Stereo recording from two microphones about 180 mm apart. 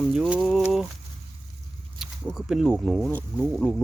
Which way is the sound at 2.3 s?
Centre (ahead or behind).